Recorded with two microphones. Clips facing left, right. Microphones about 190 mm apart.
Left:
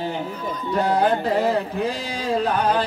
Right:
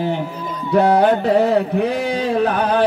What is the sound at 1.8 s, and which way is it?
Music, 65° right (ahead or behind).